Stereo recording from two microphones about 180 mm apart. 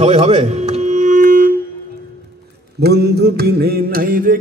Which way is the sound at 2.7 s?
60° right (ahead or behind).